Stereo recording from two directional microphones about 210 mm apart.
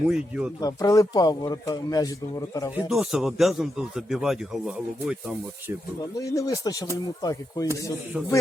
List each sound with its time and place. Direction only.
0.1 s speech: 5° right (ahead or behind)
0.6 s speech: 15° left (ahead or behind)
2.7 s speech: 5° right (ahead or behind)
6.1 s speech: 15° left (ahead or behind)